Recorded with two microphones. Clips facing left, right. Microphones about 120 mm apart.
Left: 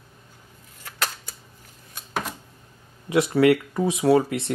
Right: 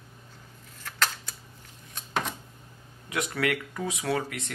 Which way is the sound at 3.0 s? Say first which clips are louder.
Left 11 dB; 30° left (ahead or behind).